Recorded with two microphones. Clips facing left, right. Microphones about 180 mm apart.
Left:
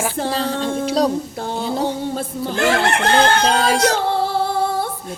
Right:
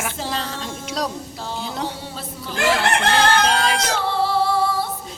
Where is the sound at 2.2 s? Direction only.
50° left (ahead or behind).